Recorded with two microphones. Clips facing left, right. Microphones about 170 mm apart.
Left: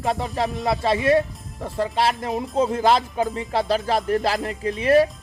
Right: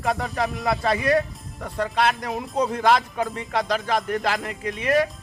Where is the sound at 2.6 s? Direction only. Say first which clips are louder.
Left 1 dB; 25° left (ahead or behind).